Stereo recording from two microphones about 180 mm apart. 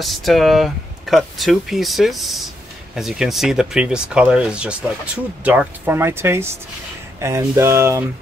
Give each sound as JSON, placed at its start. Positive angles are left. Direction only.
{"t": 0.0, "sound": "speech", "side_deg": 0}